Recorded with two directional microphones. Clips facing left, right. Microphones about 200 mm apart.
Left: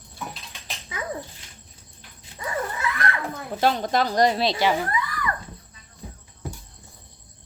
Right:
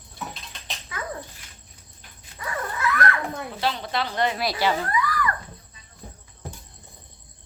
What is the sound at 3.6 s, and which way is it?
Speech, 45° left (ahead or behind).